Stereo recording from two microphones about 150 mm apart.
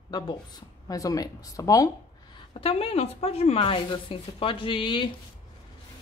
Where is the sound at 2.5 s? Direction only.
40° left (ahead or behind).